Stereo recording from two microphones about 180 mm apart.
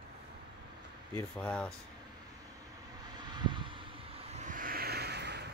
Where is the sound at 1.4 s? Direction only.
5° left (ahead or behind).